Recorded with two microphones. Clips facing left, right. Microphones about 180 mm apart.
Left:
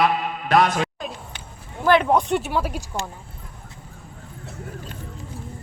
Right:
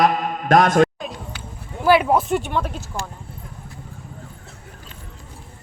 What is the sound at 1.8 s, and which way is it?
Speech, 5° right (ahead or behind).